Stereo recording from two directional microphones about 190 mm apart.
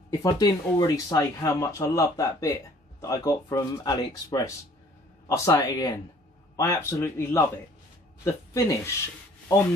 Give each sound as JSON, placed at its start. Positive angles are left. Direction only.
{"t": 0.2, "sound": "speech", "side_deg": 20}